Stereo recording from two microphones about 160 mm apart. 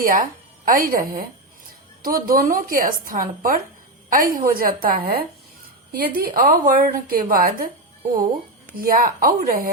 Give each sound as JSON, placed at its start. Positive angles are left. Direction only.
{"t": 0.0, "sound": "a woman's voice", "side_deg": -60}
{"t": 8.8, "sound": "a woman's voice", "side_deg": -65}